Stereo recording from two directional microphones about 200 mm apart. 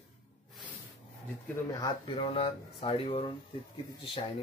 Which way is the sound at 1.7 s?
20° left (ahead or behind).